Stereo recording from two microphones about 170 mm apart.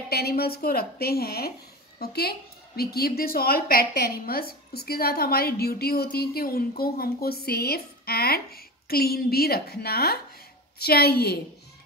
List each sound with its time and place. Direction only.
0.1 s a woman's voice: 65° left (ahead or behind)